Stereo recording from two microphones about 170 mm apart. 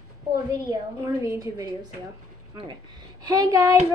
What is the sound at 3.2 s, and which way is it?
Speech, 20° right (ahead or behind).